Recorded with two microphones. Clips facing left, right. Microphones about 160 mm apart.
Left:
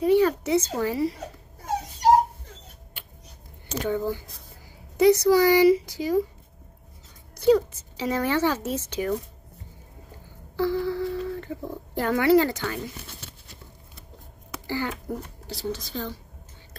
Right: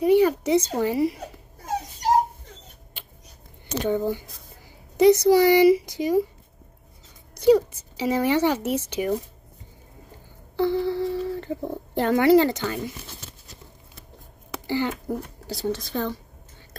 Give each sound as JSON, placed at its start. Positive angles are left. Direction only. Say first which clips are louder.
{"t": 0.0, "sound": "speech", "louder": "right 2 dB", "side_deg": -15}
{"t": 3.8, "sound": "speech", "louder": "right 3 dB", "side_deg": -25}
{"t": 7.3, "sound": "a woman's voice", "louder": "right 2 dB", "side_deg": -15}
{"t": 10.5, "sound": "humming", "louder": "right 2 dB", "side_deg": -25}
{"t": 11.2, "sound": "a sound", "louder": "right 3 dB", "side_deg": -30}
{"t": 12.3, "sound": "speech", "louder": "right 2 dB", "side_deg": -20}
{"t": 14.5, "sound": "a sound", "louder": "right 4 dB", "side_deg": -25}
{"t": 15.0, "sound": "speech", "louder": "right 3 dB", "side_deg": -40}
{"t": 15.7, "sound": "a woman's voice", "louder": "right 6 dB", "side_deg": -55}